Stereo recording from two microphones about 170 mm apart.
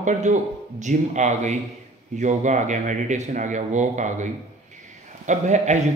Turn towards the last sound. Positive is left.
turn(degrees=-45)  # may be behind; listen again after turning